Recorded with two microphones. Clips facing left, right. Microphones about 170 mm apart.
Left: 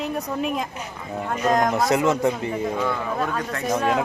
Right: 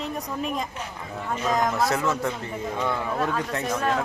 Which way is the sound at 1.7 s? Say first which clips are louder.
Left 4 dB; 20° left (ahead or behind).